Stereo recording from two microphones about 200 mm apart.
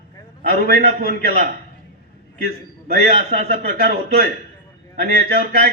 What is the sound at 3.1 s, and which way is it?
A man's voice, 50° right (ahead or behind).